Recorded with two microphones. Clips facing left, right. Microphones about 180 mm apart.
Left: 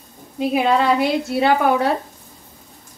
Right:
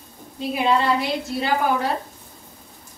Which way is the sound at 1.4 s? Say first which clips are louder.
Left 5 dB; 65° left (ahead or behind).